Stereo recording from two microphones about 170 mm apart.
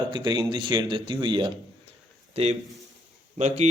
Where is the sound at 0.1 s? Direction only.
25° right (ahead or behind).